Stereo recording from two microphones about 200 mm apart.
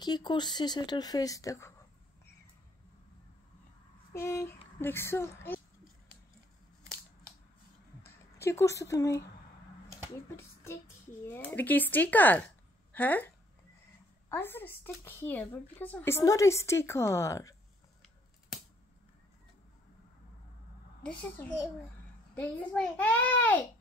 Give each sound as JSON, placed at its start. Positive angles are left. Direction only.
{"t": 0.0, "sound": "a woman's voice", "side_deg": 20}
{"t": 4.1, "sound": "speech", "side_deg": 15}
{"t": 8.4, "sound": "speech", "side_deg": 15}
{"t": 14.3, "sound": "speech", "side_deg": 10}
{"t": 21.0, "sound": "speech", "side_deg": 5}